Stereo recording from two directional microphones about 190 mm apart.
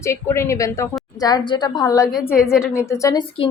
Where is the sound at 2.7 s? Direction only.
15° left (ahead or behind).